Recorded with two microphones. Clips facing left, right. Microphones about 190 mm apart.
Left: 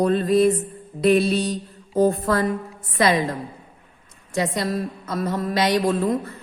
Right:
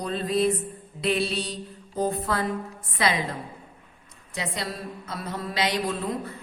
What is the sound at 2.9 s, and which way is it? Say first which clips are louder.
Speech: left 7 dB; 45° left (ahead or behind).